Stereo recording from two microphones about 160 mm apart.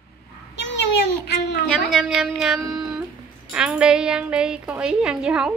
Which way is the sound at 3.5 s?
5° right (ahead or behind).